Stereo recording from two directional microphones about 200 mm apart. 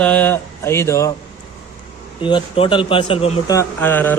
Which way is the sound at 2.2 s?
25° left (ahead or behind).